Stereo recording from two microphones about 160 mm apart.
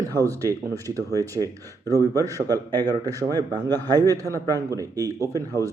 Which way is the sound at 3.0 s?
25° right (ahead or behind).